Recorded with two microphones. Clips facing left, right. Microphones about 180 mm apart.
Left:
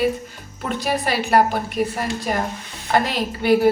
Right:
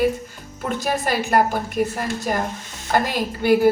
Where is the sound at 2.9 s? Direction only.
50° right (ahead or behind).